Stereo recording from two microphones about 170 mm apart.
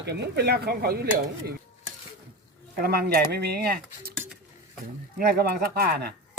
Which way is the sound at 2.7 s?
65° right (ahead or behind).